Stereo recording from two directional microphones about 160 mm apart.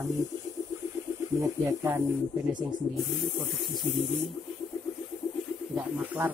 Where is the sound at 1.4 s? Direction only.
15° right (ahead or behind).